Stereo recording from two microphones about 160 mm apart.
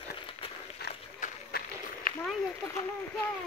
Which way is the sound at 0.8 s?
85° left.